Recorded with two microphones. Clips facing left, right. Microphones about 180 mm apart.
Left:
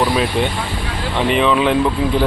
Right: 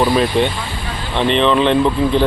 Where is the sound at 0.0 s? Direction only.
Centre (ahead or behind).